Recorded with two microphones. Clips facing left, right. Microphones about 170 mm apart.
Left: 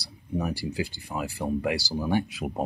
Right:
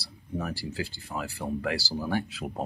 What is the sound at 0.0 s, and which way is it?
Speech, 15° left (ahead or behind).